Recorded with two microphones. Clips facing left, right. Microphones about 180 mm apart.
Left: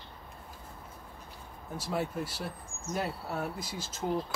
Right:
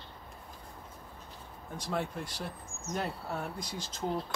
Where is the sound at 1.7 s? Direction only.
5° left (ahead or behind).